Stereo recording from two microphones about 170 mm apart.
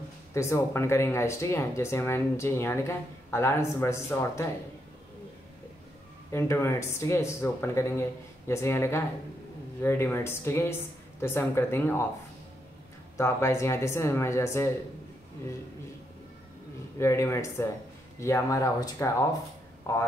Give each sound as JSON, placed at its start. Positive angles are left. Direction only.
{"t": 0.3, "sound": "speech", "side_deg": 15}
{"t": 6.3, "sound": "speech", "side_deg": 15}
{"t": 13.2, "sound": "speech", "side_deg": 15}
{"t": 17.0, "sound": "speech", "side_deg": 15}